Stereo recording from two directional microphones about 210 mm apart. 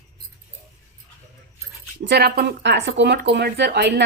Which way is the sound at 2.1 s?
50° right (ahead or behind).